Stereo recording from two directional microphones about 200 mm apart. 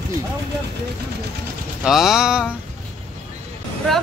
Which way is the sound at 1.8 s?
5° right (ahead or behind).